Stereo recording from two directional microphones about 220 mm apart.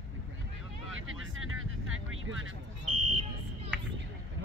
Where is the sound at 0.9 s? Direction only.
65° right (ahead or behind).